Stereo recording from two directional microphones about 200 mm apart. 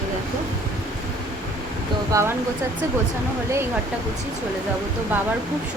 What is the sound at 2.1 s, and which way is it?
Speech, 15° right (ahead or behind).